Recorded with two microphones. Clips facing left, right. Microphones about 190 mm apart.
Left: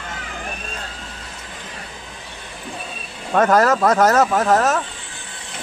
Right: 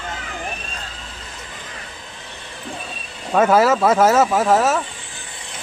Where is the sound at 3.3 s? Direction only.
5° right (ahead or behind).